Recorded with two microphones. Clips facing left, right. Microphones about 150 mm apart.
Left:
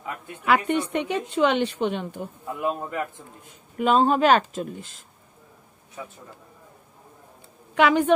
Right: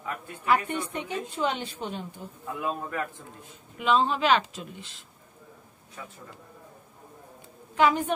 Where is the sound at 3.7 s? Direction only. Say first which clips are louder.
Left 5 dB; 45° left (ahead or behind).